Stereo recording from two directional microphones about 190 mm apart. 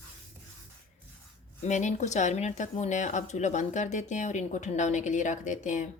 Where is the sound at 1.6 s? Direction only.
40° left (ahead or behind).